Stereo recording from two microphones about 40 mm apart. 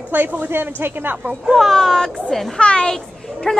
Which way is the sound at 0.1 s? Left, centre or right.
Right.